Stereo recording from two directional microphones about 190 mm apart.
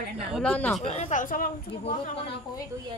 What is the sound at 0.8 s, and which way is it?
Speech, 35° left (ahead or behind).